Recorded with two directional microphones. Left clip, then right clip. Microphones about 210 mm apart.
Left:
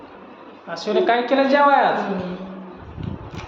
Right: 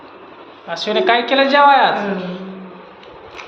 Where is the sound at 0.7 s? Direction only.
Centre (ahead or behind).